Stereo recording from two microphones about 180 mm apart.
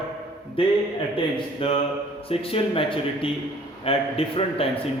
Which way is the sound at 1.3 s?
30° left (ahead or behind).